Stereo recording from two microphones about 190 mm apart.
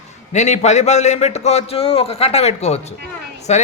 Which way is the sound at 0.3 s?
35° left (ahead or behind).